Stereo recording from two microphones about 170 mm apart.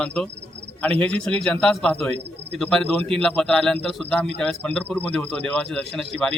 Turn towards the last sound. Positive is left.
turn(degrees=5)  # may be behind; listen again after turning